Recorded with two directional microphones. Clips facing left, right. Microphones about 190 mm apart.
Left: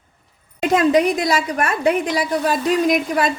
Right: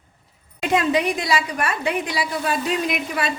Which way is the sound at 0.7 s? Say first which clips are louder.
Left 5 dB; 45° left (ahead or behind).